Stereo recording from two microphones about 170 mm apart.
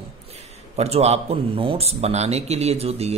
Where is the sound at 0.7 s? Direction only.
40° right (ahead or behind).